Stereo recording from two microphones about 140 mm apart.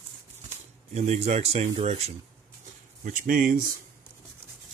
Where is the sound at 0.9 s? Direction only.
50° right (ahead or behind).